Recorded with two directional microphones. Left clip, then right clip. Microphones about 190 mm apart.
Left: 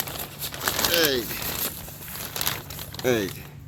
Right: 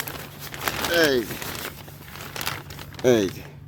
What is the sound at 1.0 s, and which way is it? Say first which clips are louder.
Speech: right 4 dB; 60° right (ahead or behind).